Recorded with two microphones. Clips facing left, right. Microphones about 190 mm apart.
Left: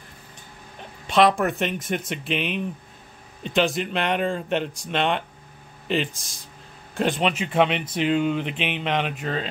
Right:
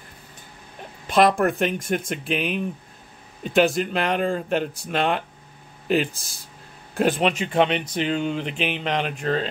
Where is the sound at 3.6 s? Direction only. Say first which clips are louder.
Right 3 dB; centre (ahead or behind).